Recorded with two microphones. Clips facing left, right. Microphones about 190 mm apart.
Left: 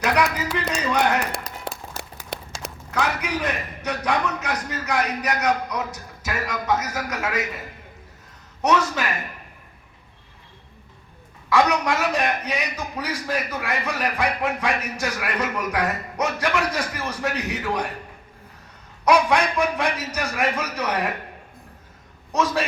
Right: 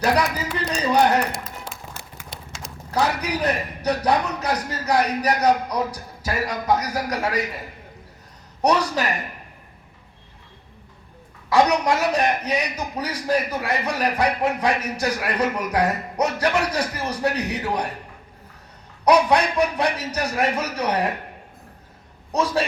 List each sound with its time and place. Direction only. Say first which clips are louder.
0.0 s a sound: right 1 dB; 35° right (ahead or behind)
1.7 s music: left 5 dB; 65° left (ahead or behind)
2.3 s clip-clop: left 8 dB; 65° left (ahead or behind)
2.9 s a man's voice: right 2 dB; 35° right (ahead or behind)
8.6 s a man's voice: right 1 dB; 35° right (ahead or behind)
11.4 s a man's voice: right 2 dB; 35° right (ahead or behind)
19.0 s a man's voice: right 2 dB; 35° right (ahead or behind)
22.3 s a man's voice: right 1 dB; 35° right (ahead or behind)